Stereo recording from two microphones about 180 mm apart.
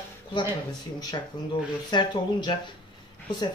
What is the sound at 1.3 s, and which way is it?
Speech, 25° left (ahead or behind).